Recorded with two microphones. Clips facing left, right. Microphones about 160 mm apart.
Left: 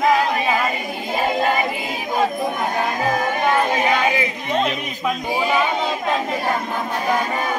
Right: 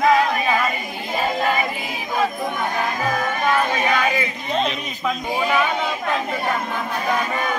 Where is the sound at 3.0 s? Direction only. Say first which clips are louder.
Left 2 dB; 30° left (ahead or behind).